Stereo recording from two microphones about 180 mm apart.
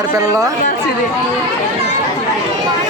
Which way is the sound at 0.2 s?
20° right (ahead or behind).